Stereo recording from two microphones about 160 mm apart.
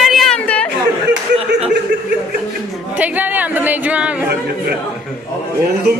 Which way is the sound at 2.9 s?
10° right (ahead or behind).